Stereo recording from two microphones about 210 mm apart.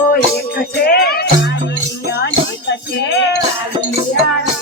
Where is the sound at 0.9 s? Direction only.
45° left (ahead or behind).